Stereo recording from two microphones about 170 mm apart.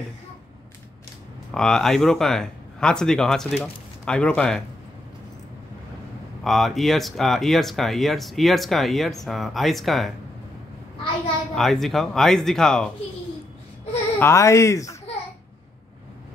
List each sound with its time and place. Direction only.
1.5 s speech: 5° left (ahead or behind)
6.4 s speech: centre (ahead or behind)
11.5 s speech: centre (ahead or behind)
14.2 s speech: 15° left (ahead or behind)